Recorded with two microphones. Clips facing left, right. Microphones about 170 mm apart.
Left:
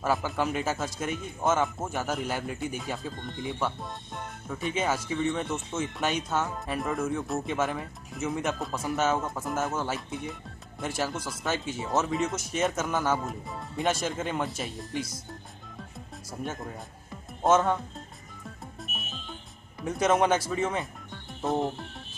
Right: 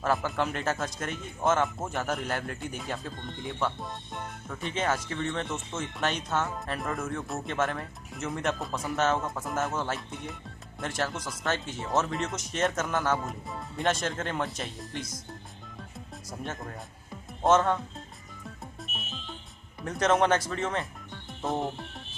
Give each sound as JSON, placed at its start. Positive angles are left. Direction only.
{"t": 0.0, "sound": "speech", "side_deg": 5}
{"t": 16.3, "sound": "speech", "side_deg": 5}
{"t": 19.8, "sound": "speech", "side_deg": 5}